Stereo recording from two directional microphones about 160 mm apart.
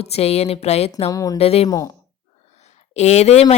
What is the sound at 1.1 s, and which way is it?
Speech, 20° left (ahead or behind).